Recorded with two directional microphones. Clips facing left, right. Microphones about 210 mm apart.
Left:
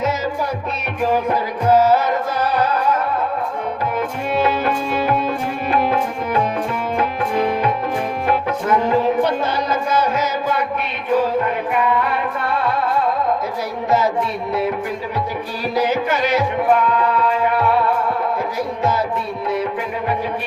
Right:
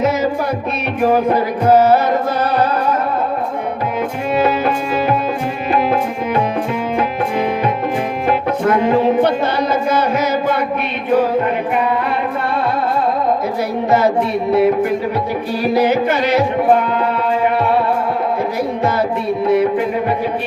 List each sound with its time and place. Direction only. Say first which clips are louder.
1.7 s music: right 3 dB; 60° right (ahead or behind)
9.9 s music: even; 60° right (ahead or behind)
14.5 s music: right 9 dB; 60° right (ahead or behind)
16.7 s music: right 1 dB; 25° right (ahead or behind)